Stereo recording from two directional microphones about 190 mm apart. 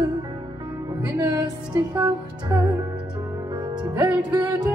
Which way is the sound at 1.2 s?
20° right (ahead or behind).